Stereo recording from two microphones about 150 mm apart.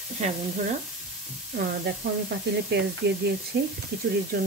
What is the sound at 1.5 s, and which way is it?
Speech, 90° right.